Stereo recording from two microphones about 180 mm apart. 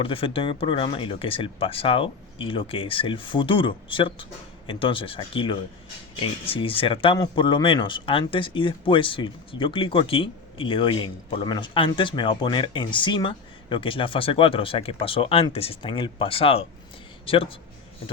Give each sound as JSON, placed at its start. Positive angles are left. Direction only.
{"t": 0.0, "sound": "speech", "side_deg": 30}